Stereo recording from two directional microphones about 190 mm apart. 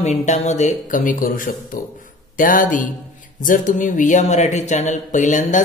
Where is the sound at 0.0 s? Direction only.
40° left (ahead or behind).